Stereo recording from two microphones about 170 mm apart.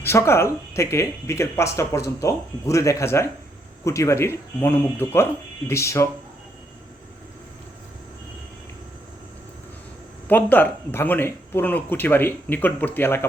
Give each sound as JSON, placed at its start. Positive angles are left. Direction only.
{"t": 0.0, "sound": "speech", "side_deg": 15}
{"t": 10.2, "sound": "speech", "side_deg": 10}